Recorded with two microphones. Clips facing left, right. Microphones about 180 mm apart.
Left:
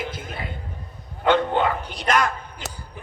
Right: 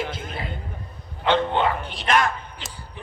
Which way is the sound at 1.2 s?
50° left (ahead or behind).